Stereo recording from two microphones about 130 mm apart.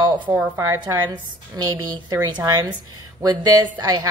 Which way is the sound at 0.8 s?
30° right (ahead or behind).